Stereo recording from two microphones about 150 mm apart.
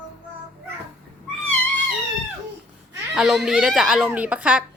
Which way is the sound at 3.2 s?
Centre (ahead or behind).